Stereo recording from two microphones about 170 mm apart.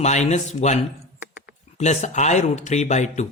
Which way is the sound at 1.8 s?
40° left (ahead or behind).